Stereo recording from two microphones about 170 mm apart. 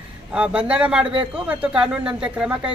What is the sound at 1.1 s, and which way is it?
Speech, 30° right (ahead or behind).